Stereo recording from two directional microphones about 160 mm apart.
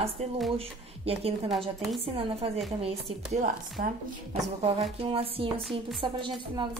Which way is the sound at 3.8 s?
60° right (ahead or behind).